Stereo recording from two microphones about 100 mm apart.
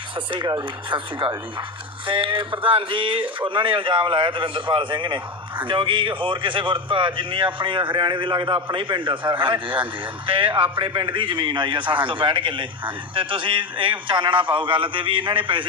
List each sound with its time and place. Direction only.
0.3 s speech: 50° right (ahead or behind)